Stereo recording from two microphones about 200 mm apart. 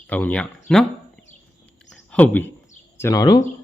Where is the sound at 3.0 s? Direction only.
15° left (ahead or behind).